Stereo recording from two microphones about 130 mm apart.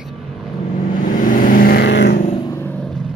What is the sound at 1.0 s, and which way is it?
Vehicle, 90° left.